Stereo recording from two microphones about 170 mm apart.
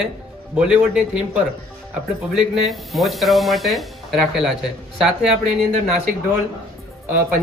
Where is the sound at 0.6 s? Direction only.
5° right (ahead or behind).